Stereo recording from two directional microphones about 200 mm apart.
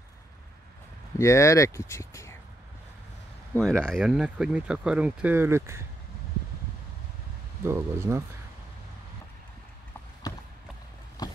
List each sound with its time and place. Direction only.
1.1 s speech: 15° left (ahead or behind)
3.7 s speech: 5° right (ahead or behind)
7.6 s speech: 15° right (ahead or behind)
10.3 s clip-clop: 20° left (ahead or behind)
11.2 s a sound: 20° left (ahead or behind)